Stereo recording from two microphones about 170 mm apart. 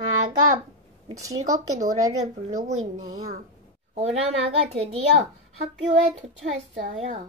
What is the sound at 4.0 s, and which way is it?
Speech, 35° right (ahead or behind).